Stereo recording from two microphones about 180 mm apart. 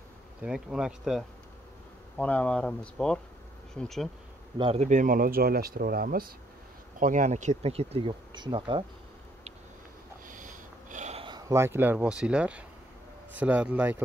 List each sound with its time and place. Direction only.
0.4 s speech: 5° right (ahead or behind)
2.1 s speech: 10° left (ahead or behind)
4.6 s speech: 35° right (ahead or behind)
10.2 s a sound: 45° right (ahead or behind)
11.2 s speech: 20° right (ahead or behind)